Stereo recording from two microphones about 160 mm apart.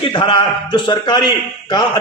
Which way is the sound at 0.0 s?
30° left (ahead or behind).